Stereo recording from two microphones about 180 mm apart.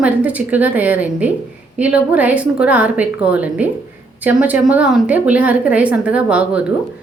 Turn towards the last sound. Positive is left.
turn(degrees=-5)  # may be behind; listen again after turning